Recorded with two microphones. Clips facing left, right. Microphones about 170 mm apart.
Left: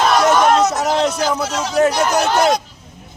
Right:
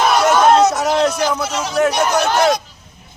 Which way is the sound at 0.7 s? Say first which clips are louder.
Right 1 dB; centre (ahead or behind).